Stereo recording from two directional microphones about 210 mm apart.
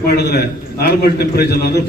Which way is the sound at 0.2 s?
50° left (ahead or behind).